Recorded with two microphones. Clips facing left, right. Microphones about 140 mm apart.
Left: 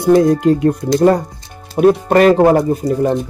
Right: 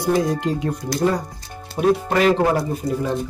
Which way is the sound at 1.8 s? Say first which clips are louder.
Left 7 dB; 55° left (ahead or behind).